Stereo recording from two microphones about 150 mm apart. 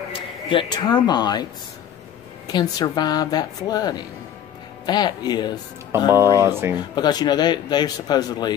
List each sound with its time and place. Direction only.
0.1 s a man's voice: 35° left (ahead or behind)
6.1 s speech: 20° right (ahead or behind)
7.0 s a man's voice: 30° left (ahead or behind)